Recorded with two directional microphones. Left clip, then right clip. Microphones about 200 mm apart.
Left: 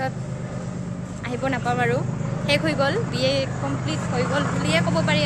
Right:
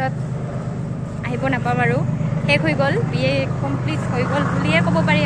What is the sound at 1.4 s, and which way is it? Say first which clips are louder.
Speech: right 3 dB; 15° left (ahead or behind).